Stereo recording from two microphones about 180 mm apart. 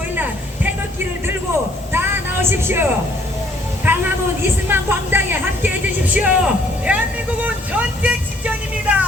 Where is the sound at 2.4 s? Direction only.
15° right (ahead or behind).